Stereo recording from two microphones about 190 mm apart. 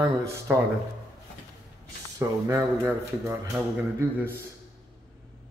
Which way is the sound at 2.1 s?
15° right (ahead or behind).